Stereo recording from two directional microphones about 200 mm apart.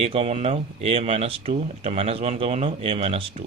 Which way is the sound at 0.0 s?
30° right (ahead or behind).